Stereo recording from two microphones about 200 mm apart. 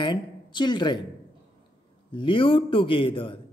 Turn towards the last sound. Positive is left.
turn(degrees=25)  # may be behind; listen again after turning